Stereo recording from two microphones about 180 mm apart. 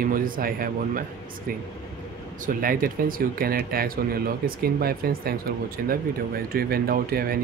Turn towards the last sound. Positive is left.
turn(degrees=-55)  # may be behind; listen again after turning